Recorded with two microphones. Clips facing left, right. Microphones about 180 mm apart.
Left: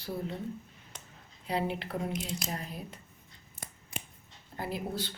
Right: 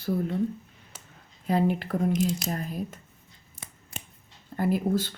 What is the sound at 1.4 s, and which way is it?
Speech, 45° right (ahead or behind).